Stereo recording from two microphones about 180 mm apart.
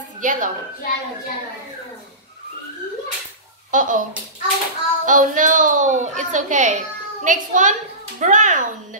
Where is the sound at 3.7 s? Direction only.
45° right (ahead or behind).